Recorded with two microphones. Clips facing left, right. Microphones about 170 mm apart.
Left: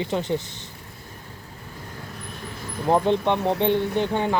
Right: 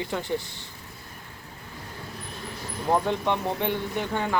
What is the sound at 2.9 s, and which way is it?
Speech, 20° left (ahead or behind).